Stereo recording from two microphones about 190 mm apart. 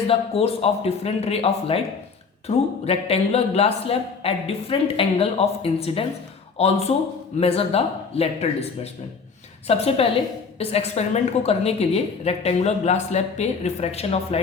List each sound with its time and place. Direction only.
0.1 s a woman's voice: 30° left (ahead or behind)